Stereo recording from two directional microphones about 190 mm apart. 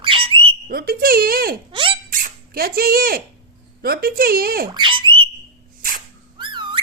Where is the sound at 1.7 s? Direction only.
25° right (ahead or behind).